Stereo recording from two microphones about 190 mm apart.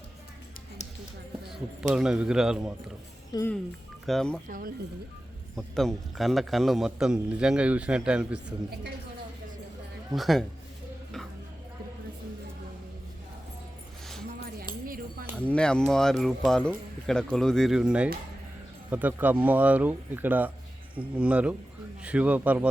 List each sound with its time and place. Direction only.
1.9 s a man's voice: 5° right (ahead or behind)
4.0 s a man's voice: centre (ahead or behind)
4.4 s speech: 45° right (ahead or behind)
5.5 s a man's voice: centre (ahead or behind)
10.1 s a man's voice: centre (ahead or behind)
14.8 s a sound: 50° right (ahead or behind)
15.4 s a man's voice: 5° left (ahead or behind)